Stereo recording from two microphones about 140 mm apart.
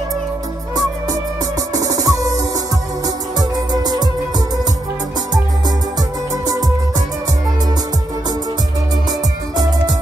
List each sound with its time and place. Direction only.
1.9 s music: 25° right (ahead or behind)